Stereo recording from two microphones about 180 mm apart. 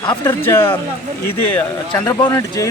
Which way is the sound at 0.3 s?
15° left (ahead or behind).